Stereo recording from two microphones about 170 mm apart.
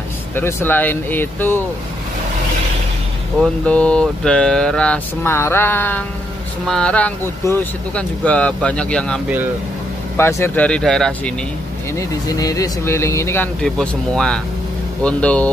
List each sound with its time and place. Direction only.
0.4 s speech: 15° left (ahead or behind)
3.6 s speech: 5° left (ahead or behind)
12.0 s speech: 20° left (ahead or behind)
13.6 s speech: 5° left (ahead or behind)